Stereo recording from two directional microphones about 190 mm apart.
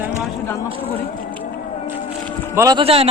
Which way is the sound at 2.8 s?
30° right (ahead or behind).